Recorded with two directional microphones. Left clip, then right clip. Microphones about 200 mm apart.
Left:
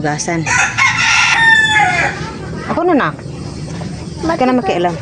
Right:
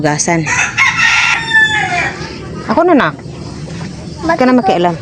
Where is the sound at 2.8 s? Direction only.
45° right (ahead or behind).